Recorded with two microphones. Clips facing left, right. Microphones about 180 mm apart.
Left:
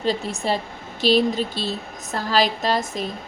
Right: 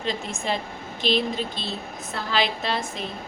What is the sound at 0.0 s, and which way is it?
A woman's voice, 35° left (ahead or behind).